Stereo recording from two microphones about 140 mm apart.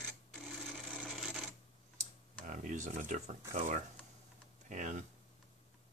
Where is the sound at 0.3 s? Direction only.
Centre (ahead or behind).